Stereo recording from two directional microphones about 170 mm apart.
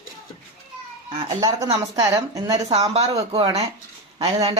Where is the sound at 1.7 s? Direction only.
25° right (ahead or behind).